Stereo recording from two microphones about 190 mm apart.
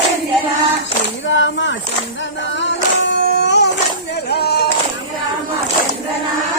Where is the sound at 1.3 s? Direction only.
75° left (ahead or behind).